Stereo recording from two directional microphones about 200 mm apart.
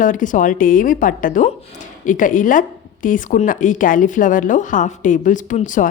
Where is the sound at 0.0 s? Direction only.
40° left (ahead or behind).